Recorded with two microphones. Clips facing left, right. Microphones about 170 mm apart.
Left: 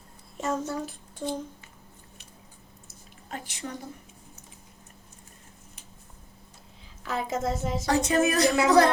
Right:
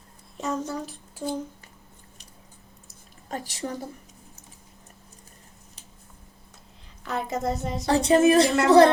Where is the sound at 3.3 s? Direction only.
40° right (ahead or behind).